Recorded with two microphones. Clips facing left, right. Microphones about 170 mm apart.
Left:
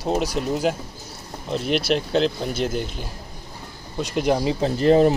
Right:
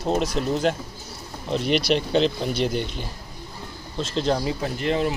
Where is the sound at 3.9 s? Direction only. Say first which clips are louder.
Left 2 dB; 15° left (ahead or behind).